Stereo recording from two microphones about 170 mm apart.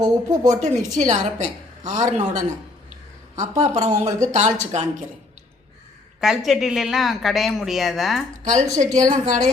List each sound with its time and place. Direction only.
0.3 s a woman's voice: 45° right (ahead or behind)
6.1 s speech: 5° right (ahead or behind)
8.4 s a woman's voice: 45° right (ahead or behind)